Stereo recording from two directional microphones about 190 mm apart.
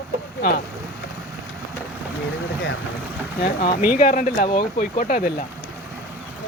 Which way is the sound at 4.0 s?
45° left (ahead or behind).